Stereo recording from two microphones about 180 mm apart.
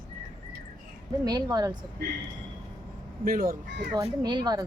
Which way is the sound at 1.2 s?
20° right (ahead or behind).